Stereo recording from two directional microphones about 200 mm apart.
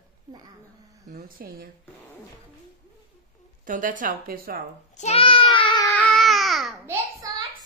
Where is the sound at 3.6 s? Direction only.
40° right (ahead or behind).